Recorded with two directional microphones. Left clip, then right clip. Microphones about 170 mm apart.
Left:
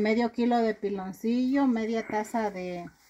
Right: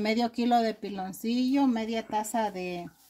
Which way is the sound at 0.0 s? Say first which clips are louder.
Left 2 dB; 15° left (ahead or behind).